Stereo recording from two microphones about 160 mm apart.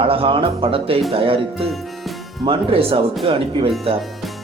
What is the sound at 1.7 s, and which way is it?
Music, centre (ahead or behind).